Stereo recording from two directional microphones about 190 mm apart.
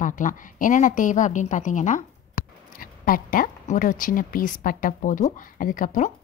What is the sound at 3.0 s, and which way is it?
Speech, 45° left (ahead or behind).